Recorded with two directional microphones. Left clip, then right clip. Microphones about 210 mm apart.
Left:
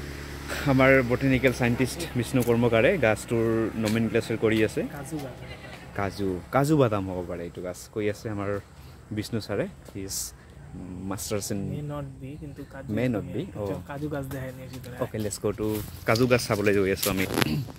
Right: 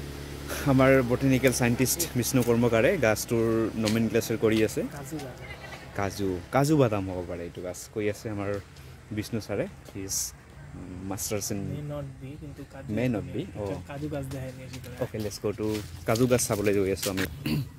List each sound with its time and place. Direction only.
0.5 s speech: 5° right (ahead or behind)
5.9 s speech: 5° right (ahead or behind)
12.9 s speech: centre (ahead or behind)
13.7 s speech: 20° left (ahead or behind)
15.2 s speech: 5° left (ahead or behind)